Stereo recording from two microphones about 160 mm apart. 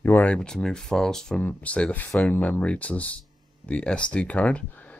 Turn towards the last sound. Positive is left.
turn(degrees=10)  # may be behind; listen again after turning